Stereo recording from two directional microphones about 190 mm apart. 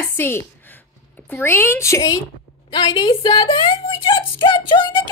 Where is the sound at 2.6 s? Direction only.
25° left (ahead or behind).